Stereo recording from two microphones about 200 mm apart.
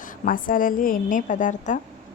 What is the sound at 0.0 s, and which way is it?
A woman's voice, 45° left (ahead or behind).